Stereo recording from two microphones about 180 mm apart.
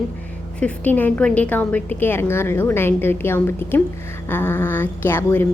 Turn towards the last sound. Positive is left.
turn(degrees=15)  # may be behind; listen again after turning